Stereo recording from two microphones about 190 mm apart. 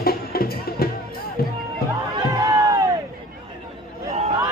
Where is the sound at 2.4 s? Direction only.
20° right (ahead or behind).